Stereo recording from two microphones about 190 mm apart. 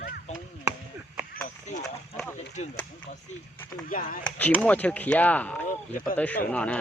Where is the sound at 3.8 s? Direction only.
45° left (ahead or behind).